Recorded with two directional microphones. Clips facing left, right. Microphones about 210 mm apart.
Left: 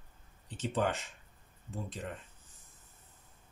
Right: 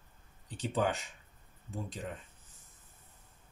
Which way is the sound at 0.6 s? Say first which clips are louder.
Even; centre (ahead or behind).